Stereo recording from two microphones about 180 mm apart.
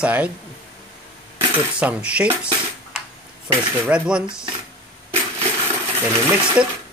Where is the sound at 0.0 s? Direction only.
10° right (ahead or behind).